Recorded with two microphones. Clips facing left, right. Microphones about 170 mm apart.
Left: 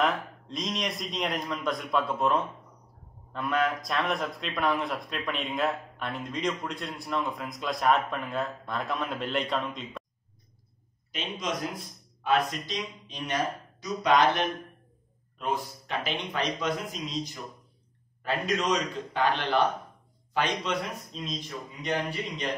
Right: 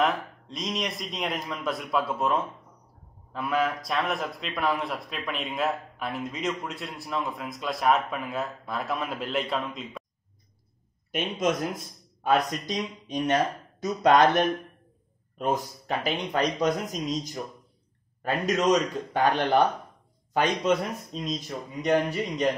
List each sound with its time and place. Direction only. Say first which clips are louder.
0.0 s a man's voice: right 2 dB; centre (ahead or behind)
11.1 s a man's voice: right 7 dB; 55° right (ahead or behind)
18.4 s a man's voice: right 6 dB; 45° right (ahead or behind)